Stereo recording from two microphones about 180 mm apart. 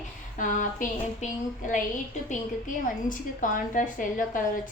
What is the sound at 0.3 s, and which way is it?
A woman's voice, 45° left (ahead or behind).